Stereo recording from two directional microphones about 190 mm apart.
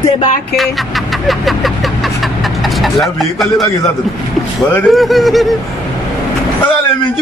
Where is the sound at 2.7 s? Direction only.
Centre (ahead or behind).